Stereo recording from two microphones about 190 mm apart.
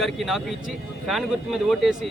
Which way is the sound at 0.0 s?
Centre (ahead or behind).